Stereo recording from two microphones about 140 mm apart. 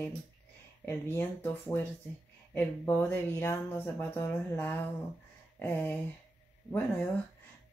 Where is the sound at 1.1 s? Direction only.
15° left (ahead or behind).